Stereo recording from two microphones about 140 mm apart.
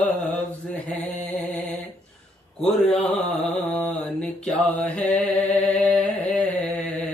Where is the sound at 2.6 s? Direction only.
5° left (ahead or behind).